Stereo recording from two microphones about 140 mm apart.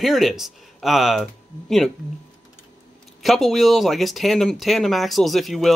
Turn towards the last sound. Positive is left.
turn(degrees=0)  # may be behind; listen again after turning